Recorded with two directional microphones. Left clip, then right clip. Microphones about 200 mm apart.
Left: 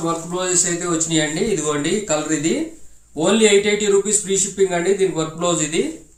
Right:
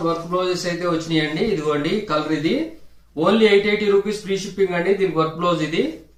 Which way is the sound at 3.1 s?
20° left (ahead or behind).